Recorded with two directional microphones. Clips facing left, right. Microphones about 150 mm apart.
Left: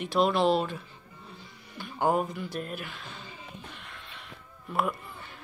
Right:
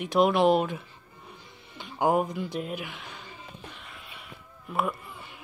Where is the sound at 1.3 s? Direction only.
20° right (ahead or behind).